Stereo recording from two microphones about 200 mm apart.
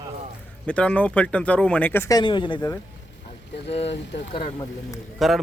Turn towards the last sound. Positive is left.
turn(degrees=0)  # may be behind; listen again after turning